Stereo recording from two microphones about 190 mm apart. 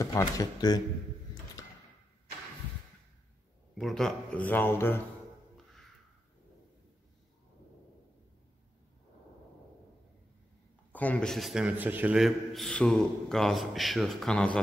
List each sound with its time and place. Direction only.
0.0 s speech: 20° left (ahead or behind)
3.7 s speech: centre (ahead or behind)
10.9 s a man's voice: 10° left (ahead or behind)